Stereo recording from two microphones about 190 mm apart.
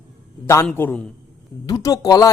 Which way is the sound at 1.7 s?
20° left (ahead or behind).